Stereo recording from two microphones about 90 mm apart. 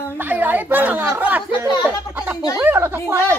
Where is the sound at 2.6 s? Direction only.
25° right (ahead or behind).